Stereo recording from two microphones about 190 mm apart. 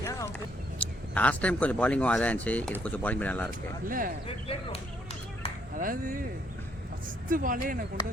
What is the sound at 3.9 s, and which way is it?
Speech, 45° right (ahead or behind).